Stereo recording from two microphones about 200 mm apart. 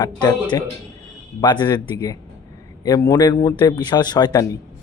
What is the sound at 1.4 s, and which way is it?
Speech, 20° left (ahead or behind).